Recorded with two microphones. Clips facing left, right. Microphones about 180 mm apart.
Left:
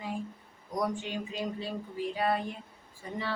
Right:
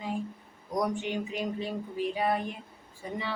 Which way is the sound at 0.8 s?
20° right (ahead or behind).